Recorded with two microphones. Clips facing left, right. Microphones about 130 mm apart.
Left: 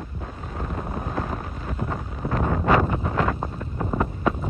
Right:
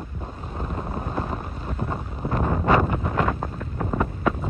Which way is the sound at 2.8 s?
5° right (ahead or behind).